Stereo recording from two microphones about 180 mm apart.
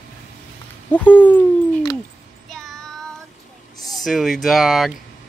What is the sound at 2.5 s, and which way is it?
Child singing, centre (ahead or behind).